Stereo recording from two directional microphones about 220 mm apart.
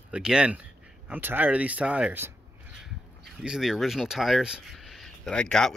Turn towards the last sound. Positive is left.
turn(degrees=5)  # may be behind; listen again after turning